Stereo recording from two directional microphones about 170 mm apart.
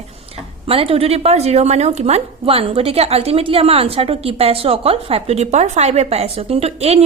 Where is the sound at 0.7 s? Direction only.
35° right (ahead or behind).